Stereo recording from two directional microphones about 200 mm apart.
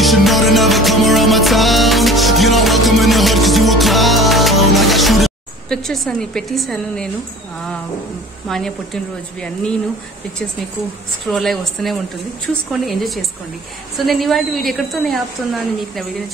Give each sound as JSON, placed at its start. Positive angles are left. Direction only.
{"t": 0.0, "sound": "music", "side_deg": 0}
{"t": 8.5, "sound": "a woman's voice", "side_deg": 0}
{"t": 11.2, "sound": "a woman's voice", "side_deg": 0}